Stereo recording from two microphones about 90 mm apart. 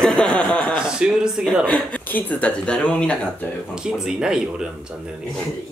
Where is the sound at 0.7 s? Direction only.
5° right (ahead or behind).